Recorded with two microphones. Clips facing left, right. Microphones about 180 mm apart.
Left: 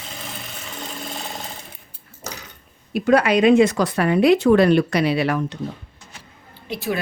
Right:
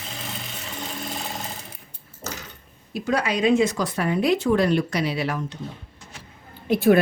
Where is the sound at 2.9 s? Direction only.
60° left (ahead or behind).